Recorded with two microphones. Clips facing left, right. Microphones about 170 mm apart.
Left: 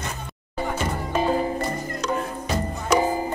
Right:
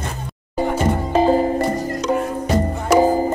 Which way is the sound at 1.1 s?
35° right (ahead or behind).